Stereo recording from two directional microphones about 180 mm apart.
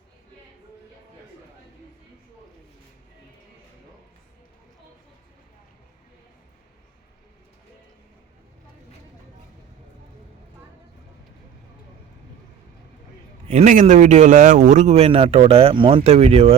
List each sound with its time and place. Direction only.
13.5 s a man's voice: 40° right (ahead or behind)